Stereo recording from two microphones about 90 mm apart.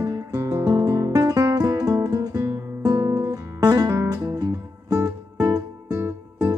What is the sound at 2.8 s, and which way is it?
Music, 50° right (ahead or behind).